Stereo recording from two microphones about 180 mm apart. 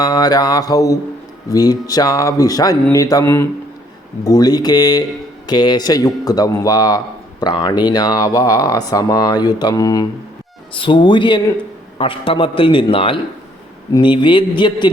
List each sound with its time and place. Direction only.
0.0 s speech: 20° left (ahead or behind)